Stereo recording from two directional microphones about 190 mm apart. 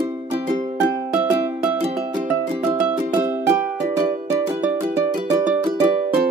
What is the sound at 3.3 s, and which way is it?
Music, 10° right (ahead or behind).